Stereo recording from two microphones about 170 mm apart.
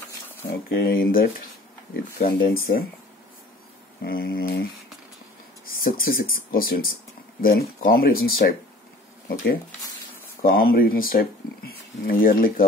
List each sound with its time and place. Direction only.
0.5 s speech: 65° left (ahead or behind)
4.0 s speech: 65° left (ahead or behind)
5.8 s speech: 60° left (ahead or behind)
10.4 s speech: 60° left (ahead or behind)